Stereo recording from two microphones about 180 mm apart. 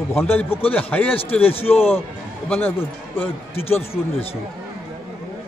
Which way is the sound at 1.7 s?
10° left (ahead or behind).